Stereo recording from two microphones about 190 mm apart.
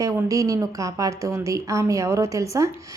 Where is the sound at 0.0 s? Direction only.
15° right (ahead or behind).